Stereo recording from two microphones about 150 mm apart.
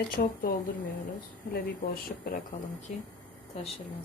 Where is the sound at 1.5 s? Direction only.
80° left.